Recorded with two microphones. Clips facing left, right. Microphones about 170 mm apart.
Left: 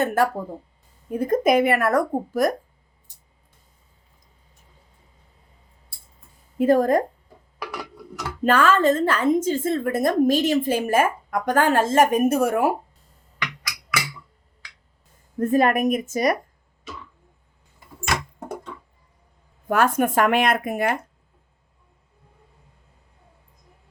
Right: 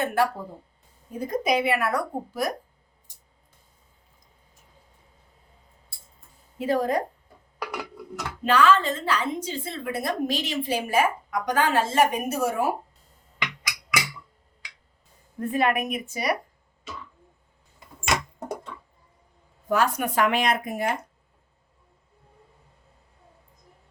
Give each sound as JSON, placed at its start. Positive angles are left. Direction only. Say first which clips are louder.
{"t": 0.0, "sound": "a woman's voice", "louder": "left 3 dB", "side_deg": 45}
{"t": 6.6, "sound": "a woman's voice", "louder": "left 7 dB", "side_deg": 50}
{"t": 8.4, "sound": "a woman's voice", "louder": "left 3 dB", "side_deg": 50}
{"t": 13.4, "sound": "music", "louder": "left 1 dB", "side_deg": -15}
{"t": 15.4, "sound": "a woman's voice", "louder": "left 5 dB", "side_deg": 45}
{"t": 19.6, "sound": "speech", "louder": "left 4 dB", "side_deg": 55}